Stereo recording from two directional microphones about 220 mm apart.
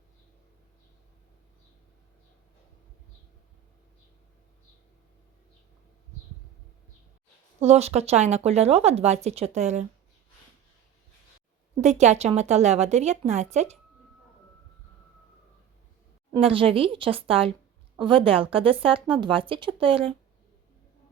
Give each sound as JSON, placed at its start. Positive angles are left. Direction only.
{"t": 7.6, "sound": "speech", "side_deg": -30}
{"t": 11.8, "sound": "a woman's voice", "side_deg": -30}
{"t": 16.3, "sound": "speech", "side_deg": -25}